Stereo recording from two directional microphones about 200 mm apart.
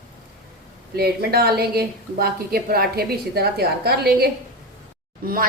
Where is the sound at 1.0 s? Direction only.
50° right (ahead or behind).